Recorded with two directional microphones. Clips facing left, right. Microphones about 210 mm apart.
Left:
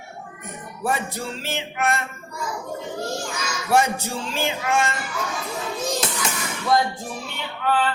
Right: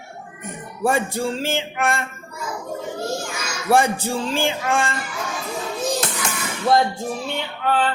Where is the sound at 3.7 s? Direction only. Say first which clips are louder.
Right 3 dB; 30° right (ahead or behind).